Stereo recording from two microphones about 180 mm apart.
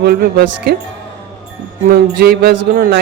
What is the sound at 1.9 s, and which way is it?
Speech, 55° right (ahead or behind).